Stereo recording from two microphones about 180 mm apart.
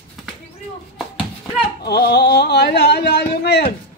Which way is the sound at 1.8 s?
65° left (ahead or behind).